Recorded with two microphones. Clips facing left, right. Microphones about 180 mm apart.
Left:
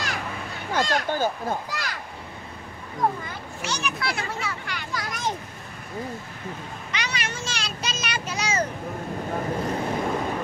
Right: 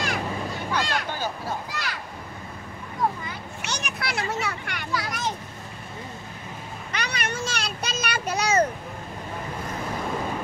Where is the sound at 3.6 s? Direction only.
65° right (ahead or behind).